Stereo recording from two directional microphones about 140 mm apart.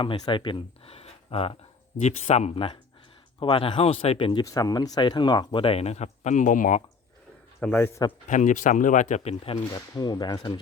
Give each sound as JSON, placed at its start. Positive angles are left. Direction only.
{"t": 0.0, "sound": "speech", "side_deg": 35}
{"t": 2.0, "sound": "speech", "side_deg": 55}
{"t": 7.6, "sound": "speech", "side_deg": 10}
{"t": 8.3, "sound": "speech", "side_deg": 60}
{"t": 9.9, "sound": "speech", "side_deg": 30}